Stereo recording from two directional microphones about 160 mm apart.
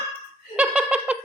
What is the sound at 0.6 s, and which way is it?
Giggle, 10° right (ahead or behind).